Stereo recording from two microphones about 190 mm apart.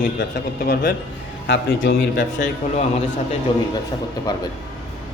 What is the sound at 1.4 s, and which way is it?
Speech, 65° left (ahead or behind).